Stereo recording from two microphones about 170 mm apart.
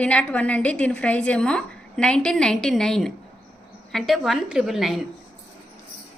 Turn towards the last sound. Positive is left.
turn(degrees=0)  # may be behind; listen again after turning